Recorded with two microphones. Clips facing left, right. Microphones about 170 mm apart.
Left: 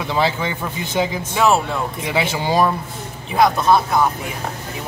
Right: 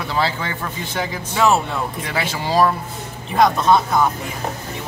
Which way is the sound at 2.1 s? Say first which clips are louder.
Left 3 dB; 15° left (ahead or behind).